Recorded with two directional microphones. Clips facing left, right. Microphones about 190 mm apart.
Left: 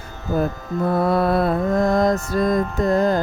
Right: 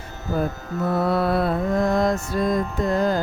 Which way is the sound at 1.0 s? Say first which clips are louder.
Left 2 dB; 45° left (ahead or behind).